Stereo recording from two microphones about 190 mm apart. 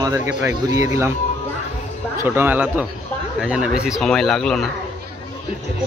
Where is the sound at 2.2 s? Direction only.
10° right (ahead or behind).